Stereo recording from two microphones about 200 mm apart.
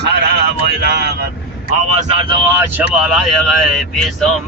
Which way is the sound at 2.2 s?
20° right (ahead or behind).